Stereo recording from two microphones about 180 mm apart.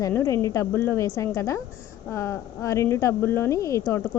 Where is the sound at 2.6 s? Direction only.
15° left (ahead or behind).